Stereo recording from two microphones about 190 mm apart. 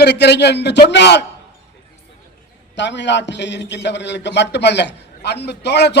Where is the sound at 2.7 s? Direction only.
65° left (ahead or behind).